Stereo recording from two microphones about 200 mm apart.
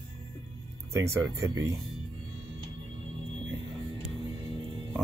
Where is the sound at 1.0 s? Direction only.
20° right (ahead or behind).